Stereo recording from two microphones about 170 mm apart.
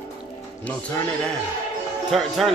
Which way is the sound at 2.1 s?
Centre (ahead or behind).